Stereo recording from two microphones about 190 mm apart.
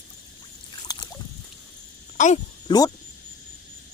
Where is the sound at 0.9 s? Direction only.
20° left (ahead or behind).